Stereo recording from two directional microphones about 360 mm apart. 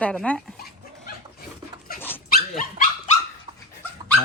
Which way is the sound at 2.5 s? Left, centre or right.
Centre.